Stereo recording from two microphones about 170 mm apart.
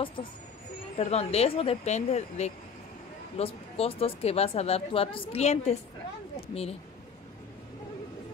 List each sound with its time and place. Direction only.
0.0 s a woman's voice: 30° left (ahead or behind)